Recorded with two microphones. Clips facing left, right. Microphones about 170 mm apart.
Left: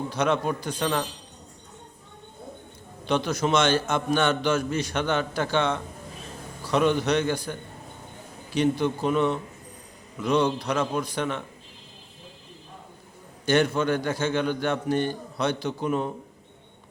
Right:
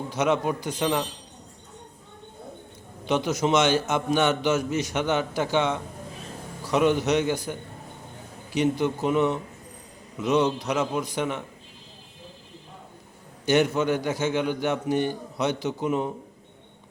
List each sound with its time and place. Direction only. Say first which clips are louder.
0.1 s a man's voice: right 2 dB; 15° right (ahead or behind)
3.0 s a man's voice: right 1 dB; 15° right (ahead or behind)
13.4 s a man's voice: right 1 dB; 20° right (ahead or behind)